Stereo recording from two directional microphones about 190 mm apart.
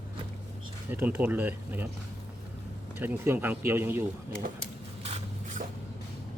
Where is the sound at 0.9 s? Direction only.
10° right (ahead or behind).